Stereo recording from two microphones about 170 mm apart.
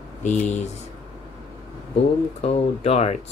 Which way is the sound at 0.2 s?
45° left (ahead or behind).